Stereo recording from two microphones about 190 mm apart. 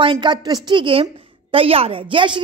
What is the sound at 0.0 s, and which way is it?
A woman's voice, 25° right (ahead or behind).